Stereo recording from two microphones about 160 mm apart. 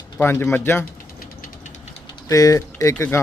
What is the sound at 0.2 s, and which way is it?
Speech, 15° left (ahead or behind).